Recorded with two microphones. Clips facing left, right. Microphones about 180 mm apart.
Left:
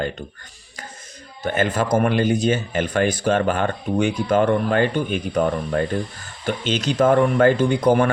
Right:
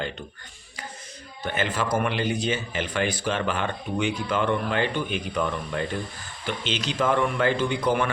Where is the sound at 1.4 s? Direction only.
45° left (ahead or behind).